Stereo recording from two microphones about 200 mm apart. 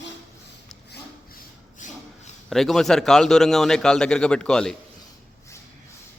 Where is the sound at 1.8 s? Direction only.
40° left (ahead or behind).